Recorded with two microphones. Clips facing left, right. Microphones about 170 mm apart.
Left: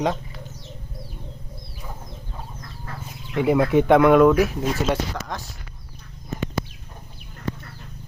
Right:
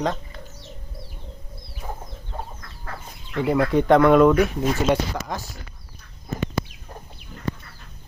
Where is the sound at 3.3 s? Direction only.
15° left (ahead or behind).